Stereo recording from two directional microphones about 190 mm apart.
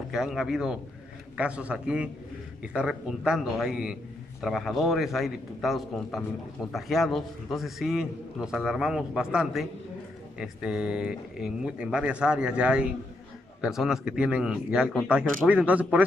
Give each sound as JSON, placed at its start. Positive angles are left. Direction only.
{"t": 0.1, "sound": "a man's voice", "side_deg": 0}